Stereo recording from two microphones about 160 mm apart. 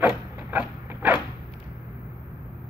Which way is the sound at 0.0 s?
10° right (ahead or behind).